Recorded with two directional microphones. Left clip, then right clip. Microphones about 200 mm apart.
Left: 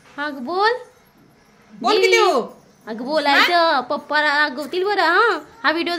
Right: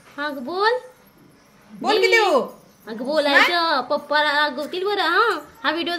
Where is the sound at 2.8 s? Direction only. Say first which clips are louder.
Left 1 dB; 50° left (ahead or behind).